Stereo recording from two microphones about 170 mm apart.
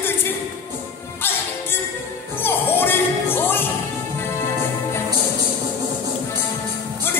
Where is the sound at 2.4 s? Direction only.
10° left (ahead or behind).